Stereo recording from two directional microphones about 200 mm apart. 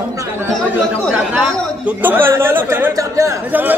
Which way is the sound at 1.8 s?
10° right (ahead or behind).